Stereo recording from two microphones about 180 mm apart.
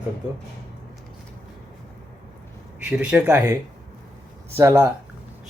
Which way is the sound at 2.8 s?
5° right (ahead or behind).